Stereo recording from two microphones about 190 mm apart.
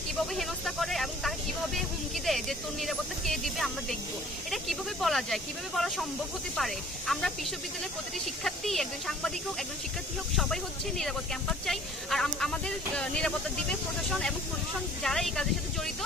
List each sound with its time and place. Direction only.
0.1 s vehicle: centre (ahead or behind)
2.2 s speech: centre (ahead or behind)
8.5 s speech: centre (ahead or behind)
10.3 s speech: centre (ahead or behind)